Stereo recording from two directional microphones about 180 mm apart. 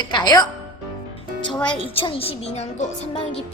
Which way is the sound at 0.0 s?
25° left (ahead or behind).